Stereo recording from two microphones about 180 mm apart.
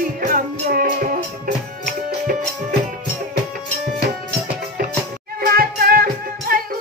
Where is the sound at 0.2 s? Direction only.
50° right (ahead or behind).